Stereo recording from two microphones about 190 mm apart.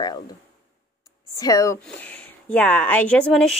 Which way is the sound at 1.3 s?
15° left (ahead or behind).